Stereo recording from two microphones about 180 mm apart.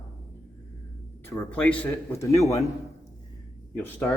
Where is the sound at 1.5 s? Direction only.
10° left (ahead or behind).